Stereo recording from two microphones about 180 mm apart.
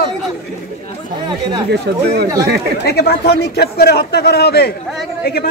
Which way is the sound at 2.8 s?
60° left (ahead or behind).